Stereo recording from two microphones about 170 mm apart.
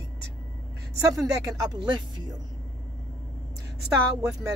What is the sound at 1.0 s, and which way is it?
Speech, 20° right (ahead or behind).